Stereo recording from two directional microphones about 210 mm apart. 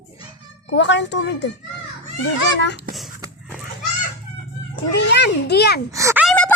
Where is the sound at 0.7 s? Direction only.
60° left (ahead or behind).